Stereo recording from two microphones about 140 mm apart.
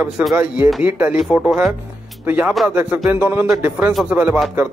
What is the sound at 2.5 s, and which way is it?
Speech, centre (ahead or behind).